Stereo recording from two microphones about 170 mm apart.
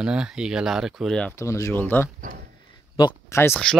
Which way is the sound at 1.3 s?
15° left (ahead or behind).